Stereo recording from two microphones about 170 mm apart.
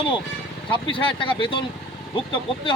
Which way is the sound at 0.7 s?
30° left (ahead or behind).